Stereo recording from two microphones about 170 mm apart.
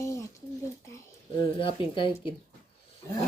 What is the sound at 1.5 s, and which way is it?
Speech, 30° left (ahead or behind).